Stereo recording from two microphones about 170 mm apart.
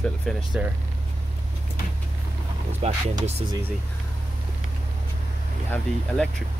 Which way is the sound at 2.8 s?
40° right (ahead or behind).